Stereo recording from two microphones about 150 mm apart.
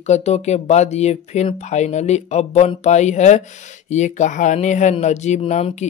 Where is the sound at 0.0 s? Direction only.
45° left (ahead or behind).